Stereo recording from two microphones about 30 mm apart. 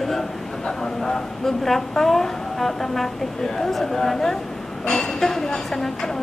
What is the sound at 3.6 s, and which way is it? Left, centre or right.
A woman's voice, centre.